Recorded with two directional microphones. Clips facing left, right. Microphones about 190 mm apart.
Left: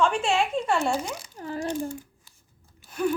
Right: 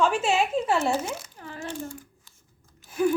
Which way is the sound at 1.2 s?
40° left (ahead or behind).